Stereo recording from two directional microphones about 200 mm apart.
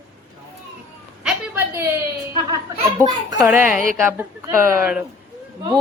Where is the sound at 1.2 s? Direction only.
10° right (ahead or behind).